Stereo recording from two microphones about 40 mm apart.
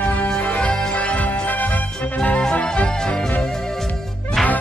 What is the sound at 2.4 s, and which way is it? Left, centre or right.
Music, left.